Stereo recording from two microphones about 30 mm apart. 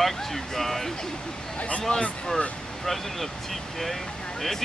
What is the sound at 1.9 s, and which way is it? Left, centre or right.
Speech, left.